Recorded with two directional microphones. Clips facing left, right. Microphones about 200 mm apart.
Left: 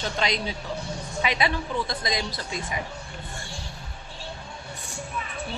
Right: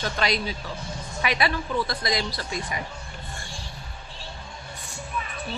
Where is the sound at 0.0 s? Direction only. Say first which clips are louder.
Right 1 dB; 20° left (ahead or behind).